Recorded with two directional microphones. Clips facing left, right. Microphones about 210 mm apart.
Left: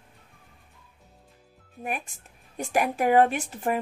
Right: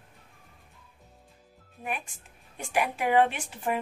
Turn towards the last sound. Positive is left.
turn(degrees=45)  # may be behind; listen again after turning